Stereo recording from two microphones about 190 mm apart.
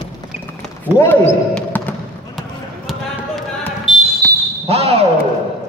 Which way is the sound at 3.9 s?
25° left (ahead or behind).